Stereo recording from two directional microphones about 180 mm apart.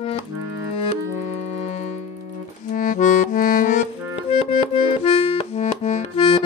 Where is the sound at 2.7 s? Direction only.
50° left (ahead or behind).